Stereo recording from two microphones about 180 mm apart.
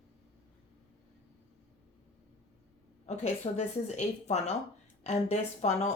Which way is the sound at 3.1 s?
40° left (ahead or behind).